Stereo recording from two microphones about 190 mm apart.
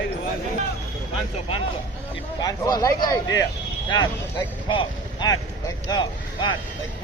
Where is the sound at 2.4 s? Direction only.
20° left (ahead or behind).